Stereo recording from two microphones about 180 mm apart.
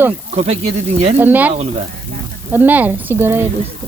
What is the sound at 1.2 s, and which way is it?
Speech, 10° right (ahead or behind).